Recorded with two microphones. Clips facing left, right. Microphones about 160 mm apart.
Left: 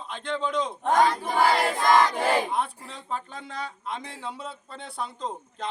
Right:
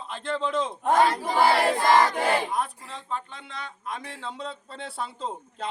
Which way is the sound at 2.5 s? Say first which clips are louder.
Even; 35° left (ahead or behind).